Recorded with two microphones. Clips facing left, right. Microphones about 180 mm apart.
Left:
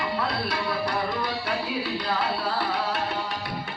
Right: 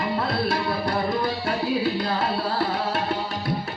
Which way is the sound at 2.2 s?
45° right (ahead or behind).